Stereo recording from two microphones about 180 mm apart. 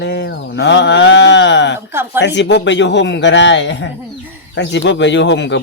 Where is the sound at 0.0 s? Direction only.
70° left (ahead or behind).